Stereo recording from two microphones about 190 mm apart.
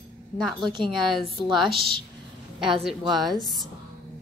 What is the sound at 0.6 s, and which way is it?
Speech, 25° right (ahead or behind).